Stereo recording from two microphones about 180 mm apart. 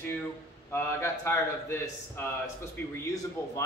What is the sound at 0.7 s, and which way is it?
A man's voice, 15° left (ahead or behind).